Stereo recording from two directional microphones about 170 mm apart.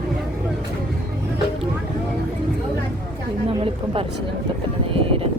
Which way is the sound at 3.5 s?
30° right (ahead or behind).